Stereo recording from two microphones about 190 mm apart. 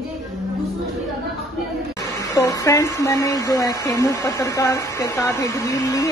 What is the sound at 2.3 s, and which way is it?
Speech, 15° left (ahead or behind).